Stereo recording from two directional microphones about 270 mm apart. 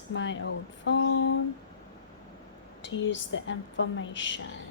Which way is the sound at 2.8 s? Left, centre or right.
Left.